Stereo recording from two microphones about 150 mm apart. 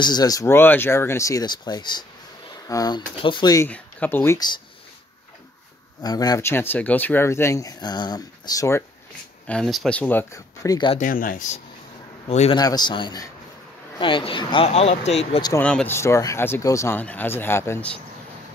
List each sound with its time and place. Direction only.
0.0 s speech: 25° left (ahead or behind)
3.6 s speech: 10° left (ahead or behind)
6.0 s speech: 25° left (ahead or behind)
9.5 s speech: centre (ahead or behind); by 10.9 s 25° left (ahead or behind)
11.0 s speech: 65° left (ahead or behind)
12.3 s speech: 45° left (ahead or behind)
12.5 s speech: 25° left (ahead or behind); by 15.4 s 45° left (ahead or behind)
15.6 s speech: 10° left (ahead or behind)